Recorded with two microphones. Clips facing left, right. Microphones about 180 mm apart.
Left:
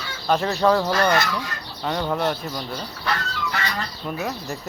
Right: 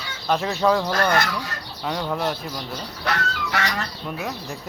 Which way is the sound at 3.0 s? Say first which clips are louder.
Right 2 dB; 80° right.